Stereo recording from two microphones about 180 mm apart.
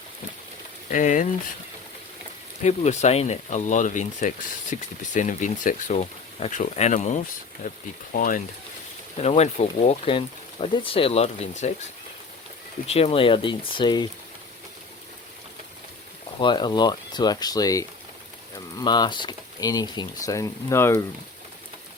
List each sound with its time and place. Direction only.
0.9 s speech: 45° left (ahead or behind)
2.6 s speech: 40° left (ahead or behind)
9.1 s speech: 35° left (ahead or behind)
12.9 s speech: 35° left (ahead or behind)
16.4 s speech: 25° left (ahead or behind)